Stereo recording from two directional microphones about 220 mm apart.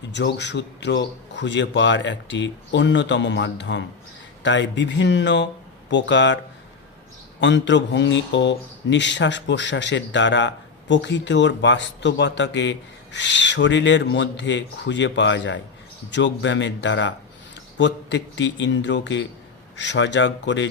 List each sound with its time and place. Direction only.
0.1 s speech: 50° left (ahead or behind)